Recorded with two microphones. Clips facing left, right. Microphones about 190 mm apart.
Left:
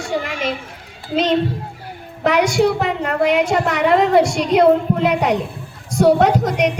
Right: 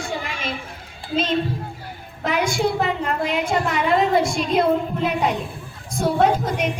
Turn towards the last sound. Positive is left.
turn(degrees=75)  # may be behind; listen again after turning